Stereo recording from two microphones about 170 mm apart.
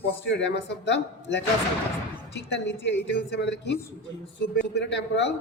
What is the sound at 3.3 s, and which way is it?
Speech, 90° left.